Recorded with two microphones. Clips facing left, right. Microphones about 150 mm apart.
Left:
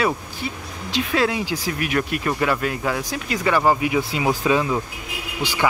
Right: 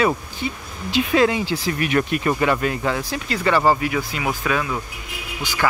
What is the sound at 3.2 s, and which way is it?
Speech, 10° left (ahead or behind).